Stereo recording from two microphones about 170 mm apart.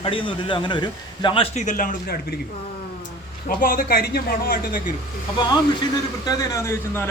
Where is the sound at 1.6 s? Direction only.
55° left (ahead or behind).